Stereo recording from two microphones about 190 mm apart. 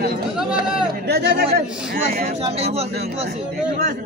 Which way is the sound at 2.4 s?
30° right (ahead or behind).